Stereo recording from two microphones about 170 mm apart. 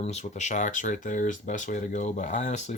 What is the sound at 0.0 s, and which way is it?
Speech, 40° left (ahead or behind).